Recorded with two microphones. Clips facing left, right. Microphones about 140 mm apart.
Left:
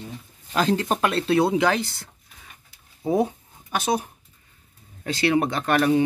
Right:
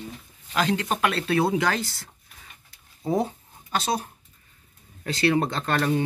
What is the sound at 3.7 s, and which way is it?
Speech, 15° left (ahead or behind).